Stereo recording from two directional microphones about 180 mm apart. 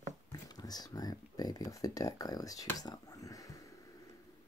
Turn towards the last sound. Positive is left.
turn(degrees=20)  # may be behind; listen again after turning